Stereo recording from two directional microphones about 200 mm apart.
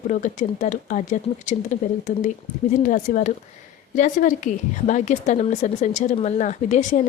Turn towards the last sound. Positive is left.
turn(degrees=40)  # may be behind; listen again after turning